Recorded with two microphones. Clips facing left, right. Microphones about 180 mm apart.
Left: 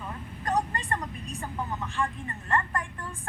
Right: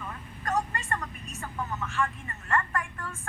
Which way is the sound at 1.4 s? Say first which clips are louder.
Even; 15° left (ahead or behind).